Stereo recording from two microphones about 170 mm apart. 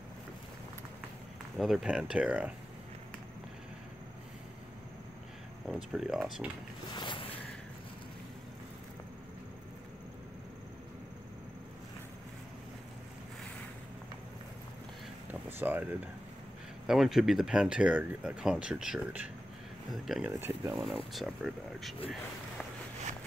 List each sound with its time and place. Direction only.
1.6 s speech: centre (ahead or behind)
5.7 s speech: 5° right (ahead or behind)
7.0 s a sound: 30° left (ahead or behind)
15.6 s speech: 10° right (ahead or behind)
20.2 s speech: 15° right (ahead or behind)
20.8 s speech: centre (ahead or behind)